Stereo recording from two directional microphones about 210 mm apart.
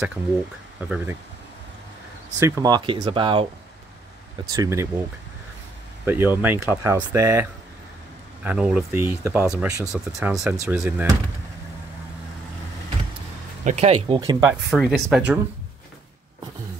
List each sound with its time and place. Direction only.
0.7 s speech: 5° right (ahead or behind)
2.3 s speech: 15° right (ahead or behind)
4.5 s speech: 15° right (ahead or behind)
6.0 s speech: 10° right (ahead or behind)
8.5 s speech: 5° right (ahead or behind)
9.9 s speech: centre (ahead or behind)
13.7 s speech: 30° right (ahead or behind)
14.0 s speech: 20° right (ahead or behind)
14.5 s speech: centre (ahead or behind)